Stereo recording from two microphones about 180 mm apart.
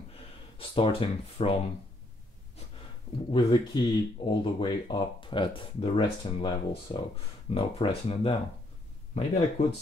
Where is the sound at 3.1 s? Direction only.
30° left (ahead or behind).